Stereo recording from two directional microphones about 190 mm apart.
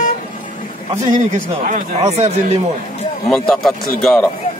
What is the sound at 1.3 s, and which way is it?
Speech, 40° right (ahead or behind).